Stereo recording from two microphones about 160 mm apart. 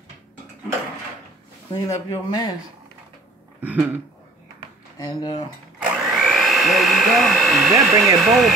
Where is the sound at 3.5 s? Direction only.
10° right (ahead or behind).